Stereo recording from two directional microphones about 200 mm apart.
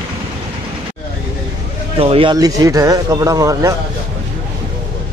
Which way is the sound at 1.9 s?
25° right (ahead or behind).